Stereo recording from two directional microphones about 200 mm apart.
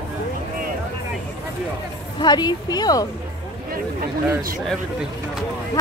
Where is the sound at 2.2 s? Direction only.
20° left (ahead or behind).